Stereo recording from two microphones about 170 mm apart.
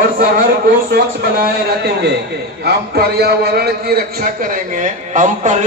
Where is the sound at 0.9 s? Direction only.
65° right (ahead or behind).